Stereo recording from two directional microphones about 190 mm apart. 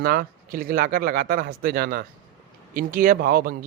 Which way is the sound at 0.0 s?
50° right (ahead or behind).